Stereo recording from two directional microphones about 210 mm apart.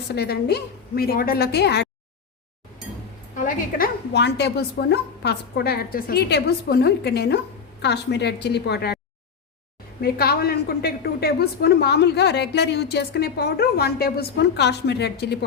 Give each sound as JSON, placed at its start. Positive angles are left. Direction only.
{"t": 0.1, "sound": "a woman's voice", "side_deg": 50}
{"t": 3.3, "sound": "a woman's voice", "side_deg": 40}
{"t": 10.0, "sound": "a woman's voice", "side_deg": 50}